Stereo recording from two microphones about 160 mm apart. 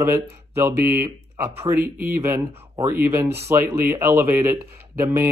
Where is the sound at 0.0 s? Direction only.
15° right (ahead or behind).